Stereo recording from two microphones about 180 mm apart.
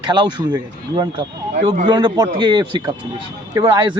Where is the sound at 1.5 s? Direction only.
40° right (ahead or behind).